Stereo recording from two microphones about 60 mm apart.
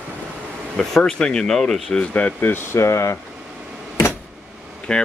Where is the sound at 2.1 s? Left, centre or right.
Left.